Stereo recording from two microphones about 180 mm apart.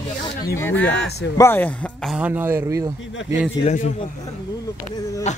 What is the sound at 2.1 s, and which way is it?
Speech, 10° right (ahead or behind).